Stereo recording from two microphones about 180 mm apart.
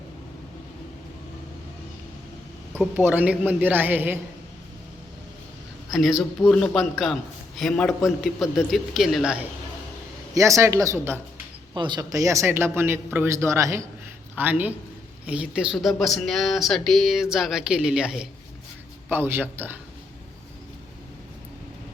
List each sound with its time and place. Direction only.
2.9 s speech: 10° right (ahead or behind)
5.9 s a man's voice: centre (ahead or behind)
10.3 s speech: 15° right (ahead or behind)
11.7 s a man's voice: 25° right (ahead or behind)